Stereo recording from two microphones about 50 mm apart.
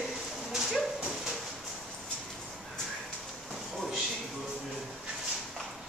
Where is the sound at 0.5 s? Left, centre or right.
Centre.